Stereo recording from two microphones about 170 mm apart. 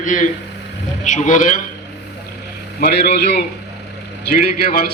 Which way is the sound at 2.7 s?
65° left (ahead or behind).